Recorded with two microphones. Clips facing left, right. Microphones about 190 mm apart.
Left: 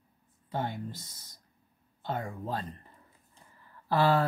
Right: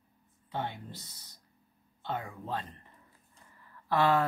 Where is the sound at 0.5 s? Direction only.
45° left (ahead or behind).